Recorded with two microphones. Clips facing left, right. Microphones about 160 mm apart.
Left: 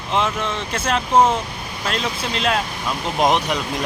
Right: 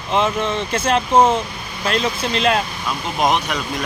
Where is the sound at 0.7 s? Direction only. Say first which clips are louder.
Right 2 dB; centre (ahead or behind).